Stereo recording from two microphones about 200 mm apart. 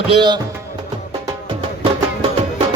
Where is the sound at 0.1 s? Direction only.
25° right (ahead or behind).